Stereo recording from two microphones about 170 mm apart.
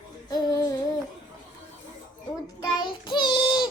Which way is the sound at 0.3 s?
25° left (ahead or behind).